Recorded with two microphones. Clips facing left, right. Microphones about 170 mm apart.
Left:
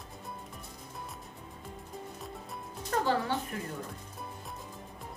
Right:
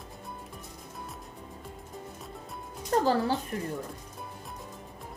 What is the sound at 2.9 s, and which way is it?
Music, 30° right (ahead or behind).